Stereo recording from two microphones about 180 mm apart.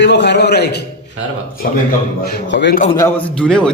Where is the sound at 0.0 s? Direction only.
75° left (ahead or behind).